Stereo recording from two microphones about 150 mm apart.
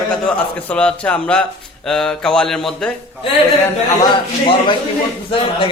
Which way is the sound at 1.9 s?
5° left (ahead or behind).